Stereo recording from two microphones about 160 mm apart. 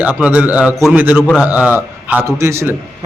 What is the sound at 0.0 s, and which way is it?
A man's voice, 10° right (ahead or behind).